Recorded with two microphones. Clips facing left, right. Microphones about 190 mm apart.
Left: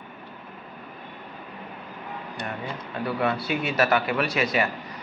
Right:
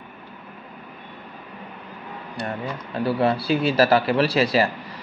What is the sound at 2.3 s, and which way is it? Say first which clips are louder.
A man's voice: right 5 dB; 35° right (ahead or behind).